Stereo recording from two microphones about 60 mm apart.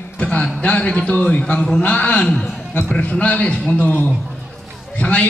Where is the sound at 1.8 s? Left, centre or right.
Left.